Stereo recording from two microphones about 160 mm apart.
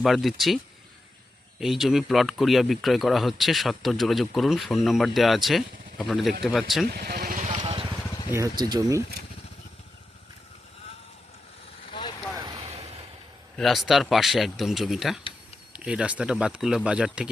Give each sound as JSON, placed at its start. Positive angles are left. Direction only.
{"t": 0.0, "sound": "speech", "side_deg": 0}
{"t": 6.8, "sound": "vehicle", "side_deg": -75}
{"t": 7.6, "sound": "vehicle", "side_deg": -30}
{"t": 8.3, "sound": "speech", "side_deg": -20}
{"t": 11.9, "sound": "vehicle", "side_deg": 30}
{"t": 12.3, "sound": "vehicle", "side_deg": -25}
{"t": 13.6, "sound": "speech", "side_deg": 0}